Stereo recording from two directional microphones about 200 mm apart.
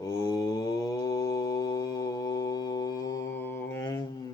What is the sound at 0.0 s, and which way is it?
Mantra, 15° left (ahead or behind).